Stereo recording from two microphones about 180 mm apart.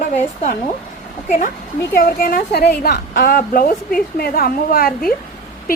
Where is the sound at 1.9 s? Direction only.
55° left (ahead or behind).